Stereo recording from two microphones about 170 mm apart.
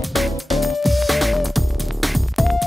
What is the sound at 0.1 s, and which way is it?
Music, centre (ahead or behind).